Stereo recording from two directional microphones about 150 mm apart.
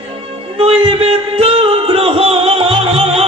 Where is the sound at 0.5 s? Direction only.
40° right (ahead or behind).